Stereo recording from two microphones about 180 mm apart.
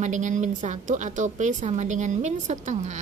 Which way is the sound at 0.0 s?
45° right (ahead or behind).